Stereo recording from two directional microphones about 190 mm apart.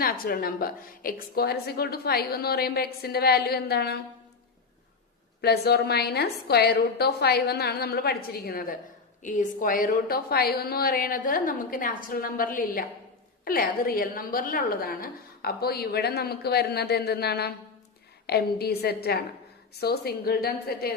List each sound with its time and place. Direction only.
0.0 s a woman's voice: 50° left (ahead or behind)
5.4 s a woman's voice: 55° left (ahead or behind)